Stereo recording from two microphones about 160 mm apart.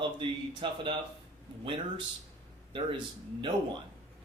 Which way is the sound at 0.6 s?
30° right (ahead or behind).